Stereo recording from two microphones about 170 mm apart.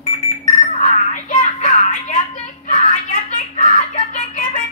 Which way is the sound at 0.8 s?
45° left (ahead or behind).